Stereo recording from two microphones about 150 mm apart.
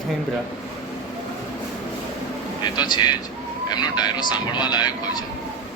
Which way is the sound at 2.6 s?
30° left (ahead or behind).